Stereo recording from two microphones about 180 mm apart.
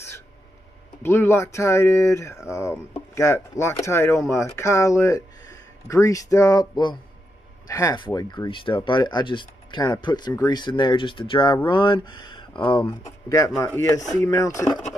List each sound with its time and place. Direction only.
1.0 s speech: 15° left (ahead or behind)
13.6 s speech: 15° left (ahead or behind)